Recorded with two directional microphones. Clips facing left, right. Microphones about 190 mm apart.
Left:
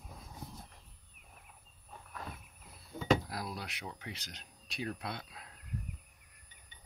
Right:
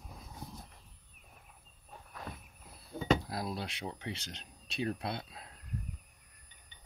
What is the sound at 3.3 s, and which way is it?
Speech, 25° right (ahead or behind).